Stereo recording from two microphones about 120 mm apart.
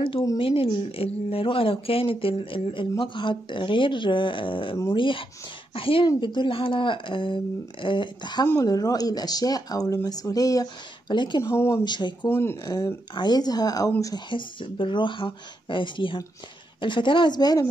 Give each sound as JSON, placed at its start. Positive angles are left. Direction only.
{"t": 0.4, "sound": "speech", "side_deg": 50}
{"t": 11.4, "sound": "speech", "side_deg": 20}
{"t": 11.8, "sound": "speech", "side_deg": 40}
{"t": 12.3, "sound": "speech", "side_deg": 20}
{"t": 12.6, "sound": "speech", "side_deg": 30}